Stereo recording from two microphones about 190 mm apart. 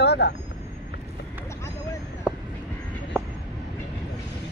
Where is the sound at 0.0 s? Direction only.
60° left (ahead or behind).